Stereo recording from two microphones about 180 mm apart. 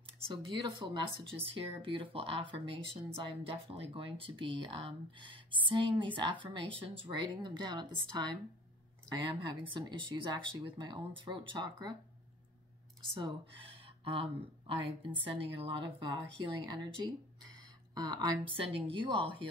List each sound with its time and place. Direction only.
0.0 s speech: 25° right (ahead or behind)
9.1 s speech: 25° right (ahead or behind)
14.7 s a woman's voice: 30° right (ahead or behind)